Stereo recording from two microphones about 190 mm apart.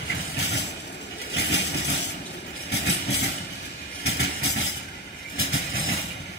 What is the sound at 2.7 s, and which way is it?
Train, 60° left (ahead or behind).